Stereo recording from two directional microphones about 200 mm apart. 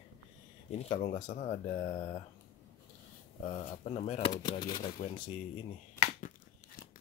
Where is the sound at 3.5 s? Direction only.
35° left (ahead or behind).